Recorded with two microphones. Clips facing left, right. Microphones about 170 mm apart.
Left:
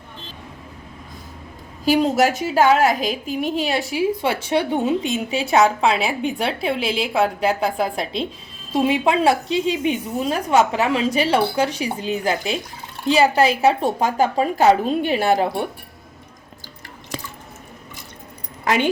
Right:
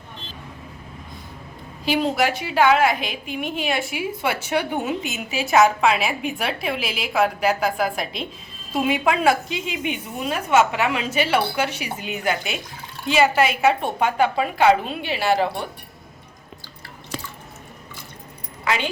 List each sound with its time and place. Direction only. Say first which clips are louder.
1.8 s a woman's voice: left 4 dB; 40° left (ahead or behind)
18.6 s speech: left 4 dB; 45° left (ahead or behind)